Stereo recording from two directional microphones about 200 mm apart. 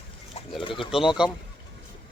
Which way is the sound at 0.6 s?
25° left (ahead or behind).